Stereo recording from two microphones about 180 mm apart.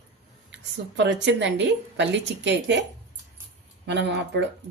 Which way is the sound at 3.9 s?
75° right (ahead or behind).